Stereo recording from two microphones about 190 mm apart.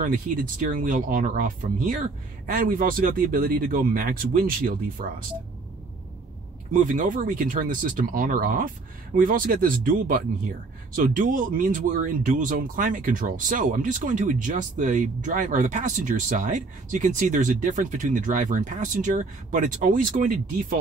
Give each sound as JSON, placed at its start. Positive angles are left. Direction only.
{"t": 0.0, "sound": "speech", "side_deg": -45}
{"t": 6.7, "sound": "speech", "side_deg": -45}